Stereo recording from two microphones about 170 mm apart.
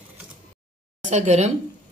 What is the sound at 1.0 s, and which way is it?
Speech, 40° right (ahead or behind).